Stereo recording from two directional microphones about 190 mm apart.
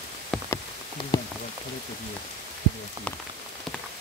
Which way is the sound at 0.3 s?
5° left (ahead or behind).